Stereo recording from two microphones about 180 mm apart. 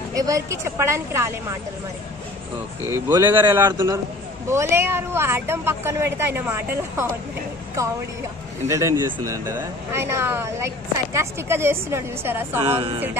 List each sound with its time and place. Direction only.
0.1 s speech: 20° right (ahead or behind)
2.9 s speech: 20° right (ahead or behind)
8.6 s speech: 15° right (ahead or behind)
12.6 s speech: 30° right (ahead or behind)